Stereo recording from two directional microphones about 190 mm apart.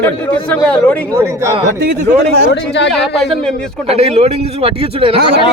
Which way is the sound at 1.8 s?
60° right (ahead or behind).